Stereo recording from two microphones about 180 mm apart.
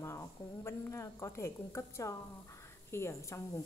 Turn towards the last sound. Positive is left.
turn(degrees=15)  # may be behind; listen again after turning